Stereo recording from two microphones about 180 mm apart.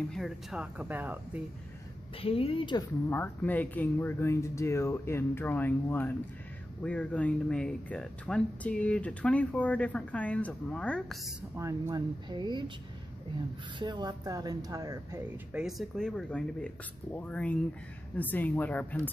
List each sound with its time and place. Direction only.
0.1 s speech: centre (ahead or behind)
2.2 s speech: 30° left (ahead or behind)
3.1 s speech: 10° left (ahead or behind)
11.5 s speech: 20° right (ahead or behind)
13.7 s speech: 25° right (ahead or behind)
15.5 s speech: centre (ahead or behind)